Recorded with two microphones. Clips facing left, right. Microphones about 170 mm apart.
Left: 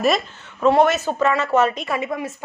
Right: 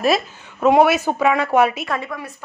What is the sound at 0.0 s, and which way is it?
Speech, 5° right (ahead or behind).